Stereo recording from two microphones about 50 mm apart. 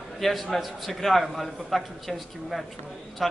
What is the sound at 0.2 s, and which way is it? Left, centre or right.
A man's voice, centre.